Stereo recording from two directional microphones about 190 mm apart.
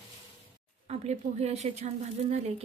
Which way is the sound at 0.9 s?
35° right (ahead or behind).